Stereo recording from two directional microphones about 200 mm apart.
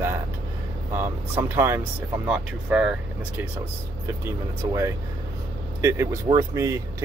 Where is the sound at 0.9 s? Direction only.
10° right (ahead or behind).